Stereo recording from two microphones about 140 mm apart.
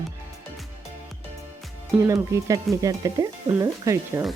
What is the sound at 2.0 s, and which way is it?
Speech, 25° right (ahead or behind).